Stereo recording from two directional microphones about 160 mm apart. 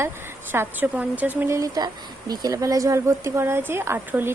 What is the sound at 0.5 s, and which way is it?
Speech, 15° right (ahead or behind).